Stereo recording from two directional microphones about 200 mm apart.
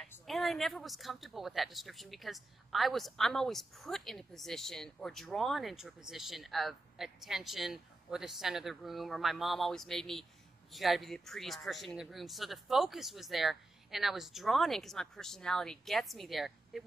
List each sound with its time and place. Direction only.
0.3 s speech: centre (ahead or behind)